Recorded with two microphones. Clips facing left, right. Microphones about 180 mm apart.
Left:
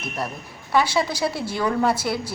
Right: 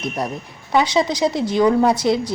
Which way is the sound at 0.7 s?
20° right (ahead or behind).